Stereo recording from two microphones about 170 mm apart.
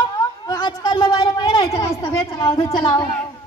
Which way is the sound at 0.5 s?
25° left (ahead or behind).